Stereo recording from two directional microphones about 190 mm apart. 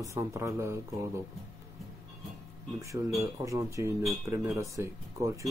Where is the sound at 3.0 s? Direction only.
20° right (ahead or behind).